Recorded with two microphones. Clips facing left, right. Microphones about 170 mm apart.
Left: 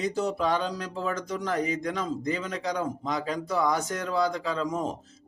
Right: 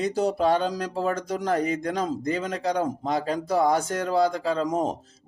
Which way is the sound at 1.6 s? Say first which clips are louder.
Right 3 dB; 55° right (ahead or behind).